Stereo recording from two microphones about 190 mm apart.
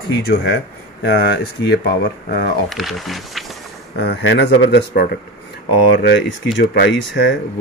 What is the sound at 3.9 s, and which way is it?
Speech, 65° left (ahead or behind).